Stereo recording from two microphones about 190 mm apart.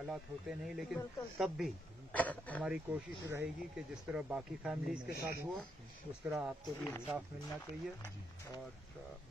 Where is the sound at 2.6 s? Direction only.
10° right (ahead or behind).